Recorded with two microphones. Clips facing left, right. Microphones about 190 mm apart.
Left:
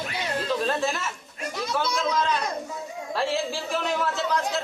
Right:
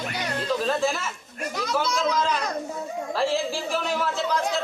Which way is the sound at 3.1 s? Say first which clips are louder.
Right 1 dB; centre (ahead or behind).